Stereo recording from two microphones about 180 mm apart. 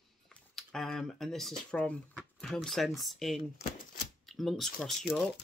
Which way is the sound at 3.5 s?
55° left (ahead or behind).